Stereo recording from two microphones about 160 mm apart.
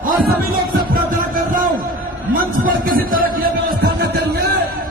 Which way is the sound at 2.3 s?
60° right (ahead or behind).